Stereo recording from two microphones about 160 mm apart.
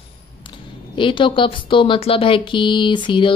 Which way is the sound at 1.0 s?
30° left (ahead or behind).